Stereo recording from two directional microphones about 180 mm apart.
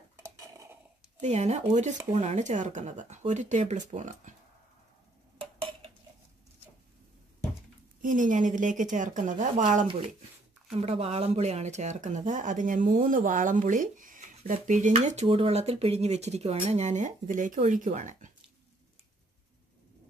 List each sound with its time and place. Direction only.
0.2 s dishes: 15° right (ahead or behind)
1.2 s speech: 40° right (ahead or behind)
8.0 s speech: 45° right (ahead or behind)
9.8 s speech: 30° right (ahead or behind)